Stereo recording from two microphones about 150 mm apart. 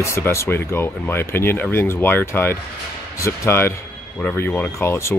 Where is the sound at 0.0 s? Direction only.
15° left (ahead or behind).